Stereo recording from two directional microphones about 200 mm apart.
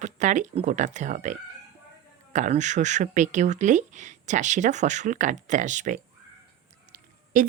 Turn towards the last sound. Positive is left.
turn(degrees=-40)  # may be behind; listen again after turning